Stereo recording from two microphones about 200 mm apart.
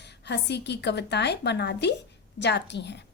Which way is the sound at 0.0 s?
60° left (ahead or behind).